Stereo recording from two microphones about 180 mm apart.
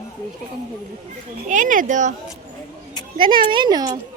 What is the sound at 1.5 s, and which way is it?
Speech, 45° right (ahead or behind).